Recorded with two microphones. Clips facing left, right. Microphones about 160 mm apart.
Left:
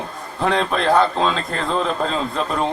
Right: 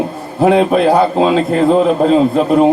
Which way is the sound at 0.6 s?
15° right (ahead or behind).